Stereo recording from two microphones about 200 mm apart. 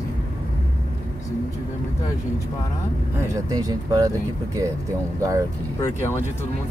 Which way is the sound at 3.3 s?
20° right (ahead or behind).